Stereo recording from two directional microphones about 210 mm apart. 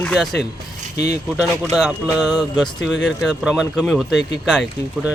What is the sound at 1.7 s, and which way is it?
Speech, centre (ahead or behind).